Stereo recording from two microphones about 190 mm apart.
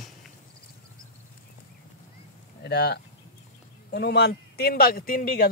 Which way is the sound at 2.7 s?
60° left (ahead or behind).